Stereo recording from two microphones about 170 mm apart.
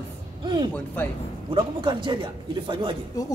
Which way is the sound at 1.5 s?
30° right (ahead or behind).